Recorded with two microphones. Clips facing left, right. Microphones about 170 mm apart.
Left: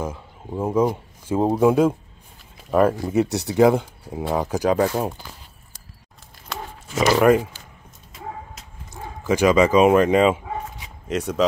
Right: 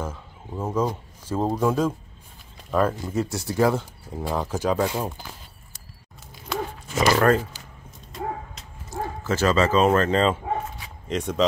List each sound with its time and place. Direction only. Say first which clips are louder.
0.0 s speech: left 3 dB; 10° left (ahead or behind)
3.2 s speech: left 6 dB; 70° left (ahead or behind)
3.5 s speech: left 5 dB; 15° left (ahead or behind)
7.2 s speech: left 5 dB; 15° left (ahead or behind)
9.2 s speech: left 5 dB; 15° left (ahead or behind)